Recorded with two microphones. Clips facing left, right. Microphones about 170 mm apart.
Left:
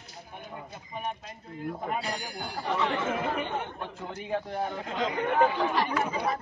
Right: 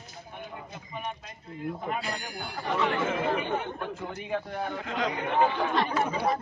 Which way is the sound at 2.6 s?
Centre (ahead or behind).